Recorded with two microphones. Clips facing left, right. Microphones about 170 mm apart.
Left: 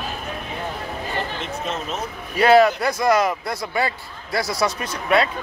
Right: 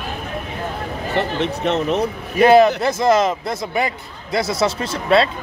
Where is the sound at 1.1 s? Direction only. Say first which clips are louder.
Right 10 dB; 70° right (ahead or behind).